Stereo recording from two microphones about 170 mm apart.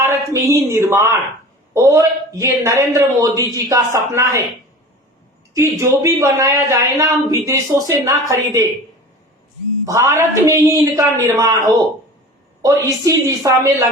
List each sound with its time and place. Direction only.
0.0 s a man's voice: 15° right (ahead or behind)
5.5 s a man's voice: 15° right (ahead or behind)
9.8 s a man's voice: 20° right (ahead or behind)